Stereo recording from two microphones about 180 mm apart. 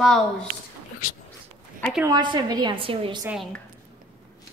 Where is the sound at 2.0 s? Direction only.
25° right (ahead or behind).